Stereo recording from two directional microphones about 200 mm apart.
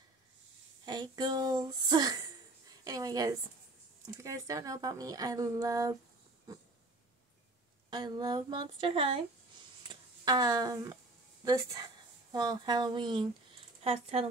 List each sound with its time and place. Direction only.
0.8 s a woman's voice: 20° right (ahead or behind)
6.5 s dog: 15° right (ahead or behind)
7.9 s speech: 20° right (ahead or behind)
12.3 s speech: 20° right (ahead or behind)